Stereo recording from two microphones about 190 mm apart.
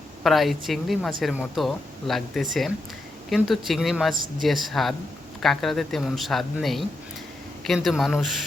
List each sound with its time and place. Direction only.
0.2 s speech: centre (ahead or behind)